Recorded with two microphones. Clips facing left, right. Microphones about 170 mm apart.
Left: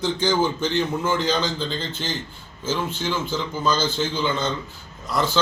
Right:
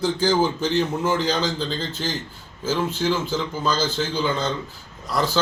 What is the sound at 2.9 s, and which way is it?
Speech, 35° right (ahead or behind).